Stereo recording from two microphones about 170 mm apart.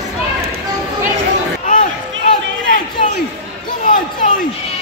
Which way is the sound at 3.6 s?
55° left (ahead or behind).